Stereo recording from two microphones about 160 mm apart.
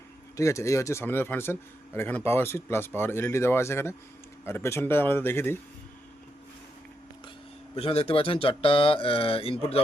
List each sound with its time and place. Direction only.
0.3 s speech: 20° left (ahead or behind)
7.8 s speech: 35° left (ahead or behind)